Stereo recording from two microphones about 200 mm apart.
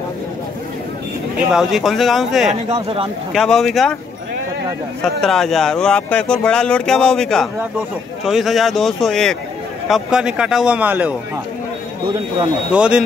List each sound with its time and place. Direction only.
1.5 s speech: centre (ahead or behind)
2.7 s speech: 30° right (ahead or behind)
3.3 s speech: centre (ahead or behind)
5.2 s speech: centre (ahead or behind)
12.7 s speech: 5° right (ahead or behind)